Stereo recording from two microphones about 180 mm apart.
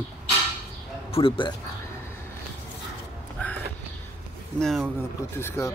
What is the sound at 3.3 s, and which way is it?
Crow, 10° left (ahead or behind).